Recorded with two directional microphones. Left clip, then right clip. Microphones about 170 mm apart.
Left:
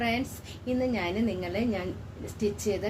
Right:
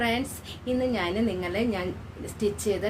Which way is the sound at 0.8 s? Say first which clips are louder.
Right 2 dB; 20° right (ahead or behind).